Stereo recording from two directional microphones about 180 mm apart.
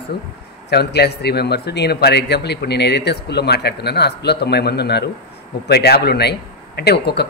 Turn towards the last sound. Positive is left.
turn(degrees=65)  # may be behind; listen again after turning